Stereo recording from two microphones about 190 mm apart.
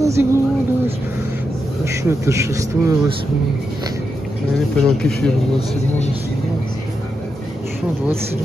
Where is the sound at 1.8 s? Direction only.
15° right (ahead or behind).